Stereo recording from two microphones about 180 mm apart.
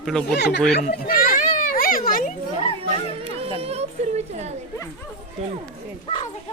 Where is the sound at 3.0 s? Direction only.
30° left (ahead or behind).